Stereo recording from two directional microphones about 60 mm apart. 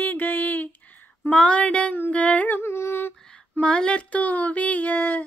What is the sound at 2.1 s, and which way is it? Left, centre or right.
Humming, left.